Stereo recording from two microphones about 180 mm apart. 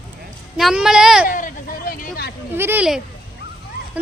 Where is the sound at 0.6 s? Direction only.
Centre (ahead or behind).